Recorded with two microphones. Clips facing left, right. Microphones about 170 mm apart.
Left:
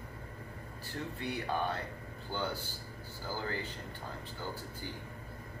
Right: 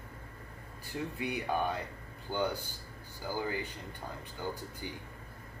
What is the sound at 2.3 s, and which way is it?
Speech, 15° right (ahead or behind).